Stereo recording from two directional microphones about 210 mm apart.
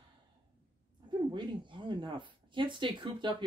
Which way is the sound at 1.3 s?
20° right (ahead or behind).